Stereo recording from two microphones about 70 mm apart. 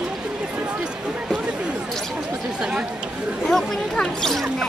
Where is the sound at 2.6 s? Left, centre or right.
Centre.